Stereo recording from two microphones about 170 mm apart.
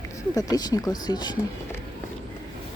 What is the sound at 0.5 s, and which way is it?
Speech, 20° left (ahead or behind).